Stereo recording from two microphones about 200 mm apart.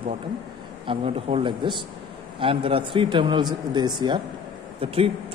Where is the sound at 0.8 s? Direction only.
25° right (ahead or behind).